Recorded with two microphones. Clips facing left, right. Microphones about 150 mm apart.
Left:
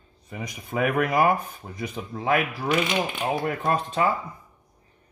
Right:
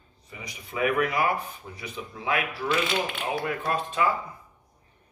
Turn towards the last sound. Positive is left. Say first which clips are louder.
# left 3 dB
turn(degrees=45)  # may be behind; listen again after turning